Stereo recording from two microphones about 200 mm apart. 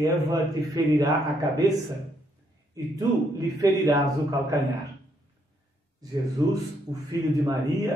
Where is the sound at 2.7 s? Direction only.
15° right (ahead or behind).